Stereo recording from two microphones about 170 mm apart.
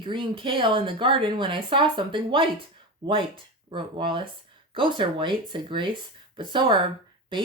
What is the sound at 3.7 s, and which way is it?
Speech, 30° right (ahead or behind).